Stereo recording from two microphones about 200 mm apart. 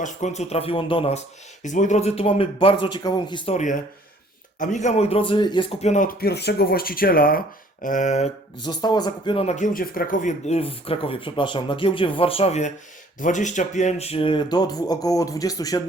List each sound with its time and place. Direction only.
0.0 s speech: 35° left (ahead or behind)
1.6 s speech: 40° left (ahead or behind)
8.6 s speech: 20° left (ahead or behind)